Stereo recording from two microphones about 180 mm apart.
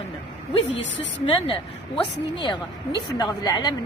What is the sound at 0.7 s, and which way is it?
Speech, 90° left.